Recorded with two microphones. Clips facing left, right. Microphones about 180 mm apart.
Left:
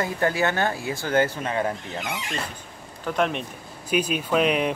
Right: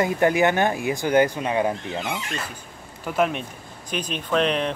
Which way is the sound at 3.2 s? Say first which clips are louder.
Right 2 dB; centre (ahead or behind).